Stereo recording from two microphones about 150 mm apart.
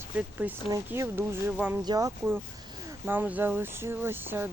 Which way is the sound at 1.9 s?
25° right (ahead or behind).